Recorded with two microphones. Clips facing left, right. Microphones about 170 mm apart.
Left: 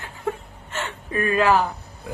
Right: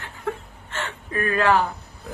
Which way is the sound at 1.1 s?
20° left (ahead or behind).